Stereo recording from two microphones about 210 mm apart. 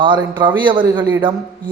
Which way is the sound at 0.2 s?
20° right (ahead or behind).